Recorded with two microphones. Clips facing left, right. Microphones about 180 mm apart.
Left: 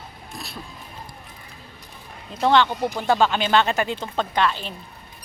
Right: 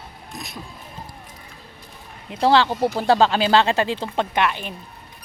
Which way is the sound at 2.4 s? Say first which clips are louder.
Right 2 dB; 30° right (ahead or behind).